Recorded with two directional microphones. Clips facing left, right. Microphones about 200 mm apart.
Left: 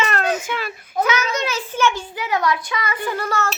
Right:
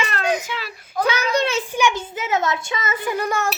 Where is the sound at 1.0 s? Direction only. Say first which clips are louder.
Left 1 dB; 30° right (ahead or behind).